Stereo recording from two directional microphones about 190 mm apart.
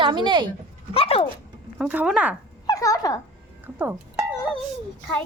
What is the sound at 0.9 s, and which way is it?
Speech, 30° left (ahead or behind).